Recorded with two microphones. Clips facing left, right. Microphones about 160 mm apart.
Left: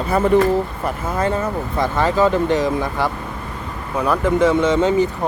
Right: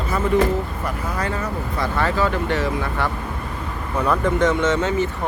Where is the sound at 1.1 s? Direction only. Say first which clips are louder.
Left 8 dB; 25° left (ahead or behind).